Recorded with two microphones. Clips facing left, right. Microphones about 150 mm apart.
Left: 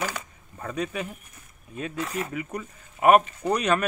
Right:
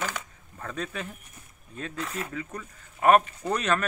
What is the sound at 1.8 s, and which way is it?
Speech, 10° left (ahead or behind).